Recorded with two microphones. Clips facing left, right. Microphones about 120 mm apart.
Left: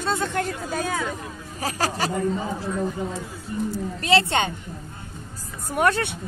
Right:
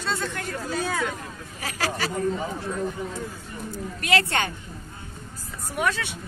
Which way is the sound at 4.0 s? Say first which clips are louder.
Left 3 dB; 30° left (ahead or behind).